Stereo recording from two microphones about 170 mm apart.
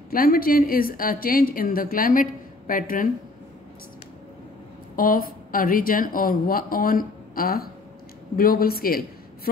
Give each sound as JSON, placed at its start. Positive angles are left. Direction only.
{"t": 0.1, "sound": "a woman's voice", "side_deg": 55}
{"t": 4.9, "sound": "a woman's voice", "side_deg": 55}